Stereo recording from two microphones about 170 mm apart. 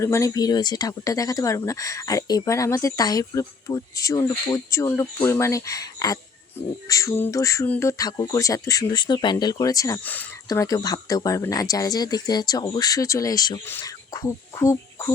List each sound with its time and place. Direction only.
0.0 s speech: 15° left (ahead or behind)
10.5 s speech: 20° left (ahead or behind)